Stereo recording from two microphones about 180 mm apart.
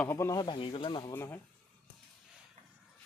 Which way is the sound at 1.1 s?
10° left (ahead or behind).